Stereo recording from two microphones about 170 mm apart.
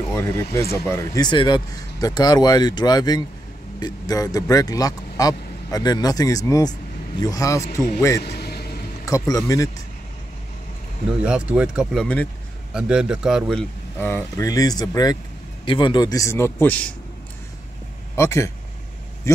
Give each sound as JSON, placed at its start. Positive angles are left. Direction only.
{"t": 0.1, "sound": "speech", "side_deg": 15}
{"t": 8.2, "sound": "vehicle", "side_deg": 70}
{"t": 9.3, "sound": "speech", "side_deg": 20}
{"t": 11.2, "sound": "a man's voice", "side_deg": -5}
{"t": 18.1, "sound": "a man's voice", "side_deg": 15}